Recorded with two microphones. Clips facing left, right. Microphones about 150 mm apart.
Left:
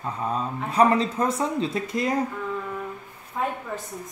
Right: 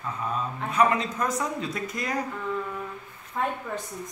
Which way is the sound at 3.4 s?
5° left (ahead or behind).